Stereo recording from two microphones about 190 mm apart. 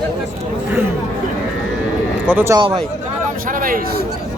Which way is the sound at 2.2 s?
10° right (ahead or behind).